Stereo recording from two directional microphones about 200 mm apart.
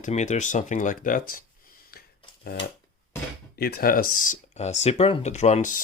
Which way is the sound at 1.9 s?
50° left (ahead or behind).